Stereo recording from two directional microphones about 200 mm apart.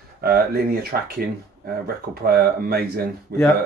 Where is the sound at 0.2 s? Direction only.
50° right (ahead or behind).